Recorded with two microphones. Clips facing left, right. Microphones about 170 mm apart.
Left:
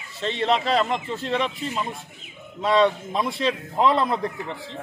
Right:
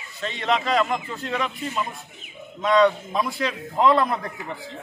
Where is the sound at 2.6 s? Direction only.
25° left (ahead or behind).